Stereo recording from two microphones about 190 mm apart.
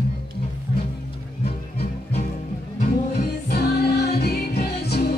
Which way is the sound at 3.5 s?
60° left (ahead or behind).